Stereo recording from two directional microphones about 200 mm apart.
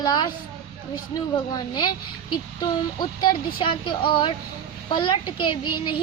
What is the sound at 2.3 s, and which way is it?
Speech, 20° left (ahead or behind).